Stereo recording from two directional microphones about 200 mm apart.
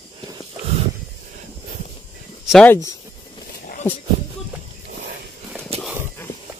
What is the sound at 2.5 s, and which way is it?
Speech, 5° left (ahead or behind).